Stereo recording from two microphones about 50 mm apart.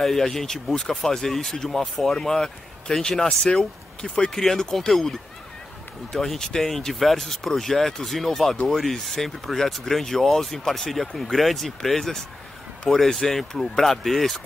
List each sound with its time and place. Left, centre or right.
0.0 s speech: centre